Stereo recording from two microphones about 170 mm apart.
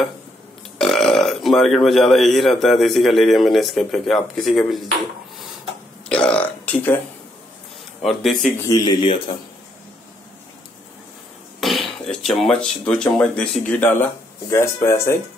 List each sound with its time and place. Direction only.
0.7 s speech: centre (ahead or behind)
6.0 s speech: 5° left (ahead or behind)
8.0 s speech: centre (ahead or behind)
8.6 s speech: 20° left (ahead or behind)
11.8 s speech: 5° left (ahead or behind)